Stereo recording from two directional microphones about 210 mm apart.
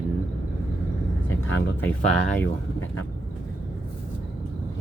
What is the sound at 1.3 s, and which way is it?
Speech, 70° left (ahead or behind).